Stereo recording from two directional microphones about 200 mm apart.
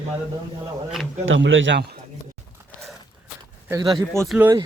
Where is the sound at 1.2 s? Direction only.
75° right (ahead or behind).